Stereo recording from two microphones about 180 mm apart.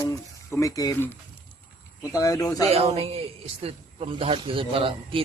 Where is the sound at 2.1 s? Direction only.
20° left (ahead or behind).